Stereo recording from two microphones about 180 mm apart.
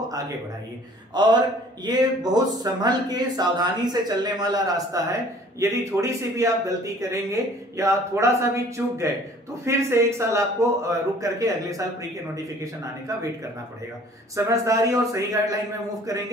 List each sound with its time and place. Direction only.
1.1 s speech: 25° right (ahead or behind)
14.3 s speech: 15° right (ahead or behind)